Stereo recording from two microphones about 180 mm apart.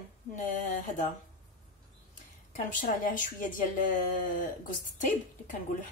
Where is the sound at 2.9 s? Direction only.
50° left (ahead or behind).